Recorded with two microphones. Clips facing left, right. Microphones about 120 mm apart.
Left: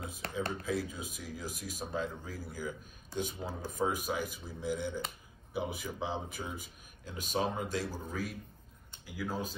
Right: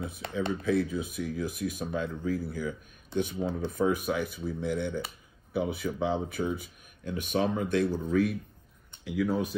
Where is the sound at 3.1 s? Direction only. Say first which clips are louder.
Right 8 dB; 55° right (ahead or behind).